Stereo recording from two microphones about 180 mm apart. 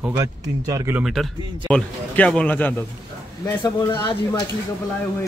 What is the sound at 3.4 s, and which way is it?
Speech, 25° left (ahead or behind).